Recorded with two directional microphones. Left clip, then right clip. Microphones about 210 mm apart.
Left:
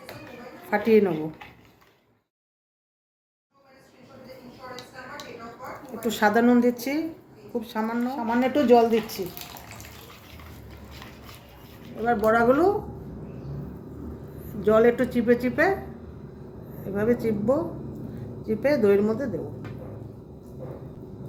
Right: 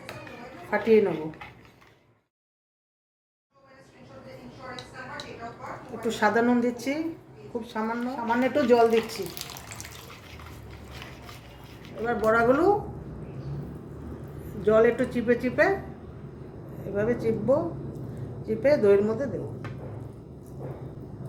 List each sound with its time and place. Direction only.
0.7 s a woman's voice: 40° left (ahead or behind)
6.1 s a woman's voice: 40° left (ahead or behind)
9.3 s bathtub: 5° right (ahead or behind)
12.0 s speech: 20° left (ahead or behind)
14.6 s speech: 25° left (ahead or behind)
16.9 s a woman's voice: 30° left (ahead or behind)